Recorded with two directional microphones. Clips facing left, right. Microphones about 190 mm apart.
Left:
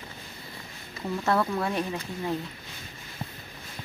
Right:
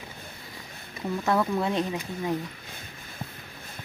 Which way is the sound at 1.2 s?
15° right (ahead or behind).